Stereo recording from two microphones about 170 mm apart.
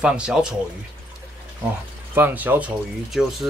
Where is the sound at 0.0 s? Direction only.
5° right (ahead or behind).